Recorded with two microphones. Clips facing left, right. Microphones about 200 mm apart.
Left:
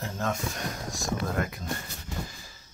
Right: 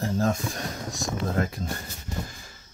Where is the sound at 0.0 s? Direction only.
35° right (ahead or behind).